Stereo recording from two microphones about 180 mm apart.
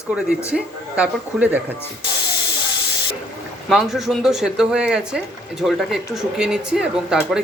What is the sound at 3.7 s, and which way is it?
Speech, centre (ahead or behind).